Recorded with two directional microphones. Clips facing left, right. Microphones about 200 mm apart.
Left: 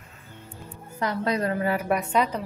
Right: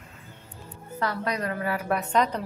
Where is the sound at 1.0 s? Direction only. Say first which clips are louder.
Left 3 dB; 25° left (ahead or behind); by 2.4 s 10° left (ahead or behind).